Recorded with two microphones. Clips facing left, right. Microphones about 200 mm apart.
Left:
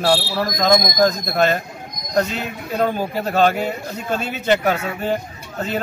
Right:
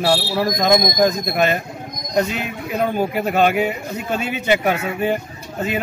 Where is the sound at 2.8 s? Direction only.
10° right (ahead or behind).